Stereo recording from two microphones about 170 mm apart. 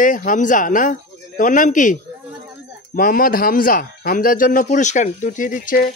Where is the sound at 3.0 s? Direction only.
55° left (ahead or behind).